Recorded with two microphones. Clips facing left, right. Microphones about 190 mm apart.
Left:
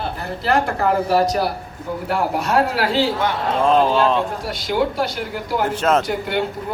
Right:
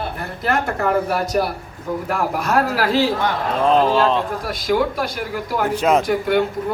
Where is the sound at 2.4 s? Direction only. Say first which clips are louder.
Right 1 dB; 45° right (ahead or behind).